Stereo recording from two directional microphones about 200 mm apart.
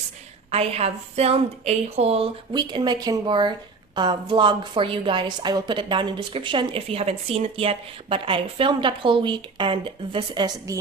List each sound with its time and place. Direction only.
0.5 s a woman's voice: 30° right (ahead or behind)